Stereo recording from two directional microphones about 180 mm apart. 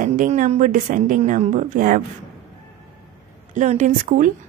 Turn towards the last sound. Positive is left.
turn(degrees=-45)  # may be behind; listen again after turning